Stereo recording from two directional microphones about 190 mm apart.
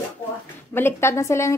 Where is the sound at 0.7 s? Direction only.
10° left (ahead or behind).